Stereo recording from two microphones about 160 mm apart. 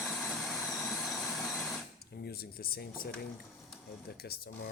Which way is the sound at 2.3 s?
70° left (ahead or behind).